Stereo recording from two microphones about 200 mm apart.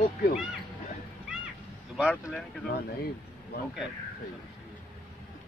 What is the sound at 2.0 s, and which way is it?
Speech, 5° left (ahead or behind).